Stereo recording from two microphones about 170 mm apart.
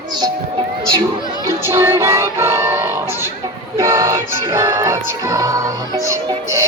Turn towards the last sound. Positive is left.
turn(degrees=-15)  # may be behind; listen again after turning